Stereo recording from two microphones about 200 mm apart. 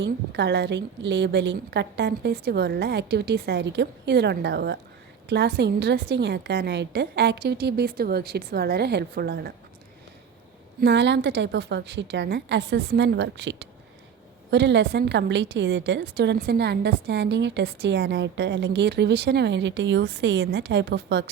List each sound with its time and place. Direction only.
0.0 s a woman's voice: 60° right (ahead or behind)
10.8 s a woman's voice: 60° right (ahead or behind)